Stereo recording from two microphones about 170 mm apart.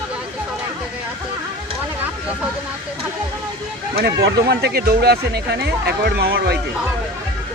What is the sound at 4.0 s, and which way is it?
Speech, 70° right (ahead or behind).